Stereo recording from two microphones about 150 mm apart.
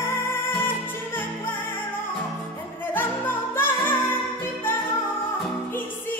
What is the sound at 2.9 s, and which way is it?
Music, 15° left (ahead or behind).